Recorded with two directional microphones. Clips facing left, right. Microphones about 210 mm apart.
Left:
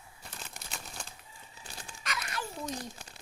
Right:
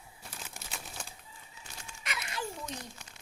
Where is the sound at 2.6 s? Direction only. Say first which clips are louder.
Left 4 dB; 35° left (ahead or behind).